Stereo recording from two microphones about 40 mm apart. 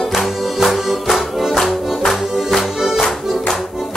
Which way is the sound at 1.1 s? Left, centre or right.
Centre.